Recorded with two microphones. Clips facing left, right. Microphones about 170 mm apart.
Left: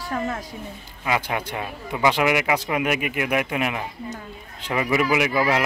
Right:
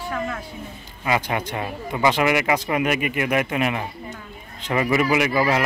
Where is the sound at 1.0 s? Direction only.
Centre (ahead or behind).